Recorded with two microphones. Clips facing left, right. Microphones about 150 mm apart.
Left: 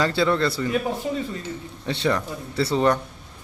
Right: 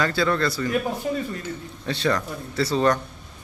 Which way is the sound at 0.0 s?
25° left (ahead or behind).